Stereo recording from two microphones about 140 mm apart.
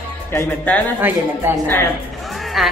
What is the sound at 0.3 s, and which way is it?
Speech, 15° left (ahead or behind).